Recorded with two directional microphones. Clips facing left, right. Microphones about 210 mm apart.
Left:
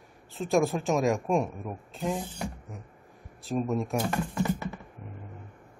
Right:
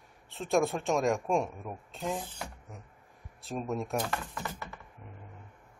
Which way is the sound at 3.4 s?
Centre (ahead or behind).